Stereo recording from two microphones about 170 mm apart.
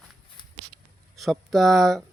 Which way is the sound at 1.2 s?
Centre (ahead or behind).